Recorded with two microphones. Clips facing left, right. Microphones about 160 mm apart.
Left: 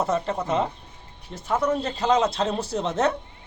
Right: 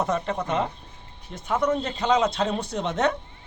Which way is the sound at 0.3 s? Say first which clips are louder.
Left 1 dB; centre (ahead or behind).